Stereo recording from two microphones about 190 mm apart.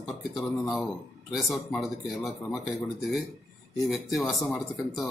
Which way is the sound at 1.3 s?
Centre (ahead or behind).